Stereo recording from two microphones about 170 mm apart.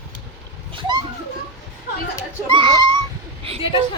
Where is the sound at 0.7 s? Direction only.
30° right (ahead or behind).